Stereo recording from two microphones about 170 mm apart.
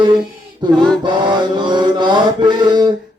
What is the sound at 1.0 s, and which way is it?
Mantra, 25° right (ahead or behind).